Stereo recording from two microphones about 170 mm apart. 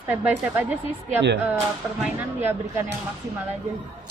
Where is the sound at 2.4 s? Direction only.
15° right (ahead or behind).